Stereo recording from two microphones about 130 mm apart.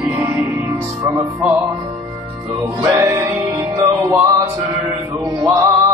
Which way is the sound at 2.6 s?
25° right (ahead or behind).